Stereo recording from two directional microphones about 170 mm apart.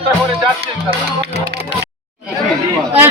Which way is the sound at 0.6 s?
35° right (ahead or behind).